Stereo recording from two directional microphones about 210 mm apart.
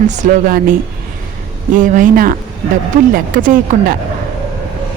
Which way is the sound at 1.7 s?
40° right (ahead or behind).